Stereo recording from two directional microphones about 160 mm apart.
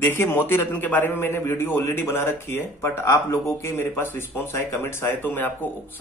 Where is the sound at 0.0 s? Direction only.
15° left (ahead or behind).